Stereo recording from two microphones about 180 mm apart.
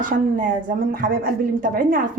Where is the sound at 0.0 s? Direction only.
50° right (ahead or behind).